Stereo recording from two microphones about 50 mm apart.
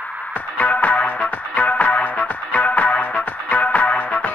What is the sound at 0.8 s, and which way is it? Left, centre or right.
Music, left.